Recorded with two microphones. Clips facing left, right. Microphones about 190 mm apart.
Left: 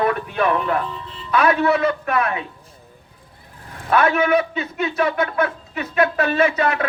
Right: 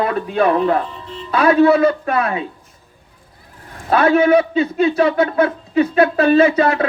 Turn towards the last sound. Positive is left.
turn(degrees=-30)  # may be behind; listen again after turning